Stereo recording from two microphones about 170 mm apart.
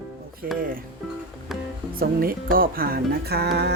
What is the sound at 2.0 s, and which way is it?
Speech, 60° right (ahead or behind).